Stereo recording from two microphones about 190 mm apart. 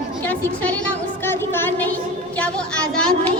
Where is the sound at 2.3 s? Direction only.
5° left (ahead or behind).